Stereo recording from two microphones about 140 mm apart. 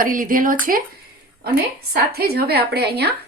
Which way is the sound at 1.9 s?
90° right.